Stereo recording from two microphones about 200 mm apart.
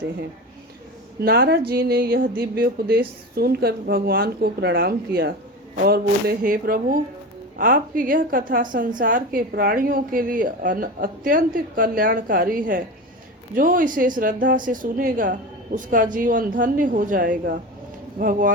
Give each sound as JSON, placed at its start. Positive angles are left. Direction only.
{"t": 1.2, "sound": "a woman's voice", "side_deg": -55}